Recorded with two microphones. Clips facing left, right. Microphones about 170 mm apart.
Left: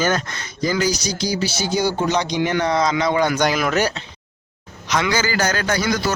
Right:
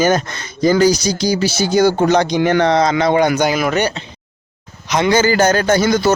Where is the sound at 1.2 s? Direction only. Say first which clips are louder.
Right 5 dB; 90° right; by 2.5 s 50° right (ahead or behind).